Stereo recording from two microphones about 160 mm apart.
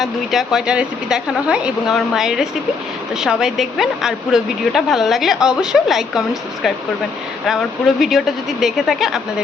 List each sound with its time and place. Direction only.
0.0 s a woman's voice: centre (ahead or behind)